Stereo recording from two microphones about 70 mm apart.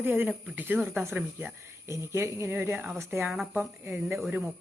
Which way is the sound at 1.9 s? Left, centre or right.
Right.